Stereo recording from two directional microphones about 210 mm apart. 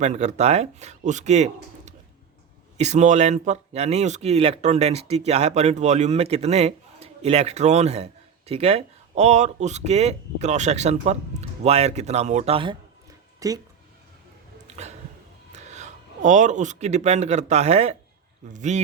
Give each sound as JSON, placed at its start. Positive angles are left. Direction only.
{"t": 0.0, "sound": "speech", "side_deg": -35}
{"t": 13.4, "sound": "speech", "side_deg": -15}
{"t": 14.7, "sound": "a sound", "side_deg": -30}
{"t": 15.5, "sound": "speech", "side_deg": -35}